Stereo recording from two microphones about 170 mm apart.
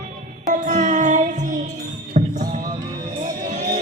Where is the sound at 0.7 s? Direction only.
50° right (ahead or behind).